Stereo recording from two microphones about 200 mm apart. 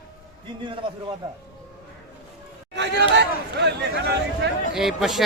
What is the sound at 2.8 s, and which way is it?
Speech, 60° right (ahead or behind).